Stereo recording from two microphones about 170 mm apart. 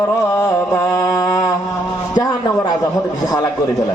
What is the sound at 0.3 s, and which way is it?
Mantra, 15° left (ahead or behind).